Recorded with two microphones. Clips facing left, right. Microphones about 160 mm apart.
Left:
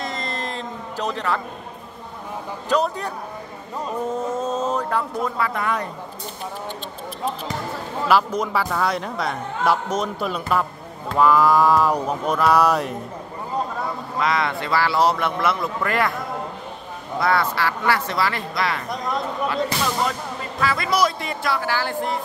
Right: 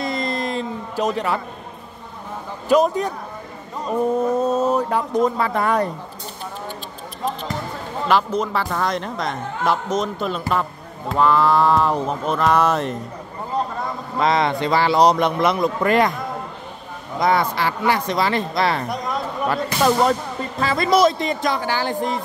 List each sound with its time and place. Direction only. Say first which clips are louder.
0.0 s a sound: right 5 dB; 15° right (ahead or behind)
2.7 s mantra: right 5 dB; 15° right (ahead or behind)
4.4 s mantra: right 5 dB; 10° right (ahead or behind)
5.4 s speech: right 4 dB; 35° right (ahead or behind)
8.1 s a man's voice: even; 10° left (ahead or behind)
14.2 s speech: right 4 dB; 25° right (ahead or behind)
17.2 s speech: right 2 dB; 15° right (ahead or behind)
19.5 s speech: right 8 dB; 50° right (ahead or behind)
20.6 s speech: right 5 dB; 25° right (ahead or behind)